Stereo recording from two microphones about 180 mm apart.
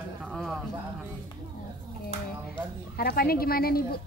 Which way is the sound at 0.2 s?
Centre (ahead or behind).